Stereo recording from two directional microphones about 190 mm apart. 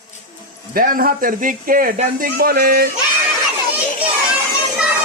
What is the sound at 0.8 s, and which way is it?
Speech, 50° right (ahead or behind).